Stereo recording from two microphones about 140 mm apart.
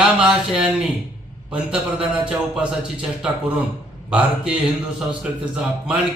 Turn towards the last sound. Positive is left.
turn(degrees=-10)  # may be behind; listen again after turning